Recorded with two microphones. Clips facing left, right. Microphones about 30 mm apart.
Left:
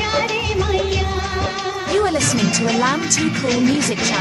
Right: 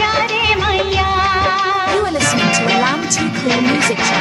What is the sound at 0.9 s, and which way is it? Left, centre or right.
Music, right.